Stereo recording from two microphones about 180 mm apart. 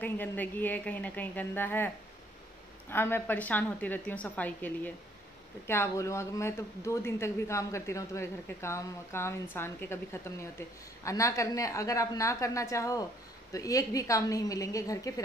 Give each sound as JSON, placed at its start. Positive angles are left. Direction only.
{"t": 0.0, "sound": "speech", "side_deg": 10}
{"t": 2.9, "sound": "a woman's voice", "side_deg": 10}